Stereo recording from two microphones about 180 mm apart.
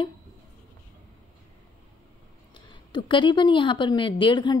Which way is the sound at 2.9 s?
25° left (ahead or behind).